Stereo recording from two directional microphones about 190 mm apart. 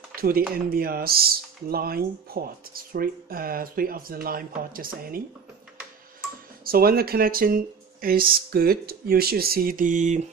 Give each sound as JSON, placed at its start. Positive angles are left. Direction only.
{"t": 0.1, "sound": "a sound", "side_deg": -50}
{"t": 0.7, "sound": "speech", "side_deg": -50}
{"t": 6.6, "sound": "speech", "side_deg": -50}